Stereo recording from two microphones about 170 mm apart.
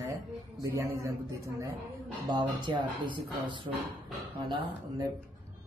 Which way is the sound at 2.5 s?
25° right (ahead or behind).